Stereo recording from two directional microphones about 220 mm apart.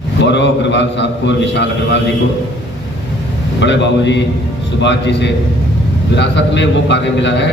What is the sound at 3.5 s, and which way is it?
Speech, 55° left (ahead or behind).